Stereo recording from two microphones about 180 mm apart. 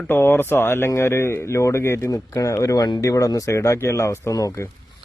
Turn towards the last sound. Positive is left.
turn(degrees=15)  # may be behind; listen again after turning